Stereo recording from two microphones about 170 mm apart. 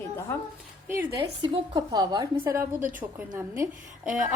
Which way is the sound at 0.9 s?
15° right (ahead or behind).